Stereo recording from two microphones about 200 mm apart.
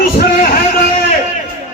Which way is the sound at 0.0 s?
45° left (ahead or behind).